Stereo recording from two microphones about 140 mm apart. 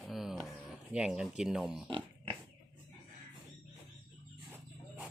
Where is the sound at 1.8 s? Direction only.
35° right (ahead or behind).